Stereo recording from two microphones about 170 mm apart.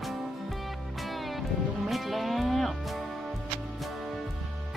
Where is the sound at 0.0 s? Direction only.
Centre (ahead or behind).